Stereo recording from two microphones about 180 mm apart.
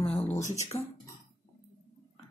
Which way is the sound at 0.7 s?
15° left (ahead or behind).